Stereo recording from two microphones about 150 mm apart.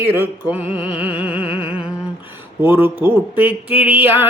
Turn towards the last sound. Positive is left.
turn(degrees=-10)  # may be behind; listen again after turning